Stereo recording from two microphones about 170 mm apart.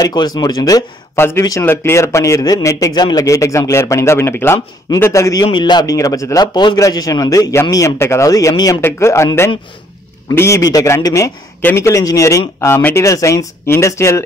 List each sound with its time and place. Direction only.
0.0 s a man's voice: 25° left (ahead or behind)